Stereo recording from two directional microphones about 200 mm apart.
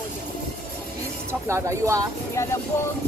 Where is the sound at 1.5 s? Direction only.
15° right (ahead or behind).